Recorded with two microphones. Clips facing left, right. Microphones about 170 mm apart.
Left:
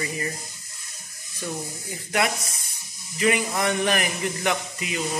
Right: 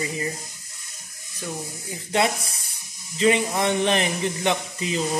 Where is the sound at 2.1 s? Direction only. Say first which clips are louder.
Right 2 dB; 30° right (ahead or behind).